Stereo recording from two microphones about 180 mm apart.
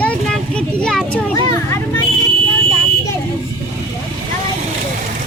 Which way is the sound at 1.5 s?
15° left (ahead or behind).